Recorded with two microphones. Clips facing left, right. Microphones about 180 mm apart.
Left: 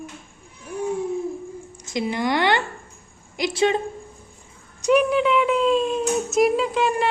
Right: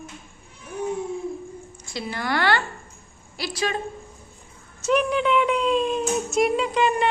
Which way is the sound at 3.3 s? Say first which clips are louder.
Left 7 dB; 20° left (ahead or behind).